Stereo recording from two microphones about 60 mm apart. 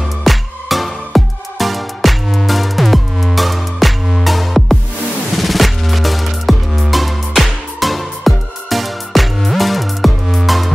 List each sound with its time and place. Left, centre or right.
0.2 s music: centre